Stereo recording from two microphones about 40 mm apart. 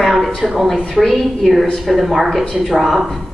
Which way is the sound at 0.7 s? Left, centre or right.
Centre.